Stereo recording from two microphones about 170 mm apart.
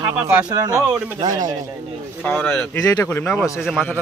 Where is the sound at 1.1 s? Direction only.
25° right (ahead or behind).